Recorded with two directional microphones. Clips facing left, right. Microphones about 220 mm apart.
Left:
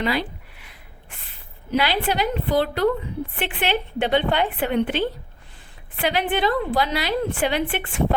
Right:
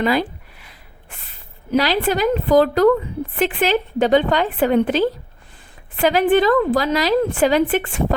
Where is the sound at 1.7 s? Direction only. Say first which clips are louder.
Right 4 dB; 40° right (ahead or behind).